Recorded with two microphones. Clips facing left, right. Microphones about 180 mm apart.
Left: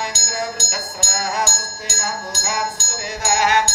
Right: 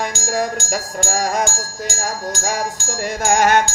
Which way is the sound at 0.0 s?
50° right (ahead or behind).